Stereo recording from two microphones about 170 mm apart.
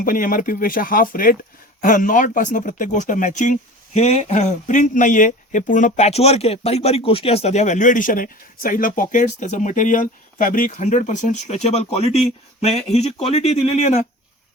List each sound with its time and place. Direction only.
0.0 s speech: 55° left (ahead or behind); by 14.0 s 40° left (ahead or behind)